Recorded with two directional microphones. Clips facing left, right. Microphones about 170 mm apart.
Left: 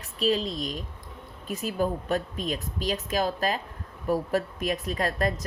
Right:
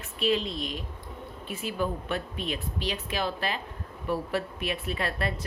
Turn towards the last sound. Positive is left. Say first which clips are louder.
# left 4 dB
turn(degrees=40)  # may be behind; listen again after turning